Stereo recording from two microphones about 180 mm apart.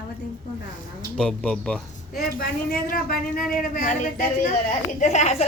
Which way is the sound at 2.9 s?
55° left (ahead or behind).